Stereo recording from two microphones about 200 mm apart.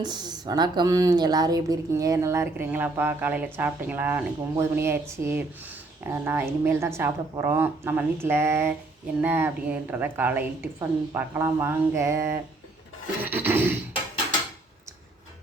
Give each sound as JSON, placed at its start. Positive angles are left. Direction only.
{"t": 0.0, "sound": "speech", "side_deg": -20}